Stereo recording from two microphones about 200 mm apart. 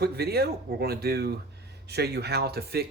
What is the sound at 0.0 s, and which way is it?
Speech, 50° right (ahead or behind).